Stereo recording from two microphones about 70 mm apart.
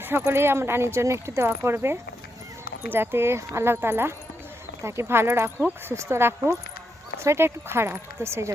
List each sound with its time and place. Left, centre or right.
0.3 s speech: right